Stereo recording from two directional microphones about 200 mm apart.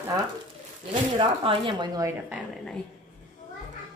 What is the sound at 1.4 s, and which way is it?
Speech, 25° right (ahead or behind).